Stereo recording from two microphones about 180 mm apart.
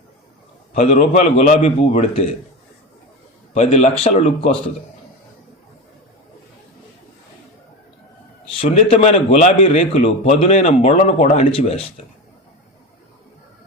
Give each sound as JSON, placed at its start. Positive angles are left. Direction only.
{"t": 0.7, "sound": "a man's voice", "side_deg": 35}
{"t": 3.5, "sound": "a man's voice", "side_deg": 30}
{"t": 8.6, "sound": "a man's voice", "side_deg": 35}